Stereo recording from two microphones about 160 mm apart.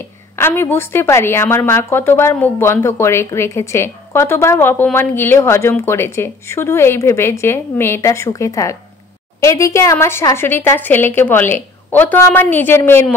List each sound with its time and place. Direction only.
0.4 s a woman's voice: 15° left (ahead or behind)